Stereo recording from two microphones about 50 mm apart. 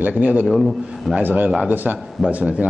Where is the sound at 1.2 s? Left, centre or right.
Right.